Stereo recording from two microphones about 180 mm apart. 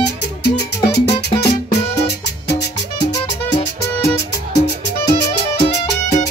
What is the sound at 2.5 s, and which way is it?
Music, 70° left (ahead or behind).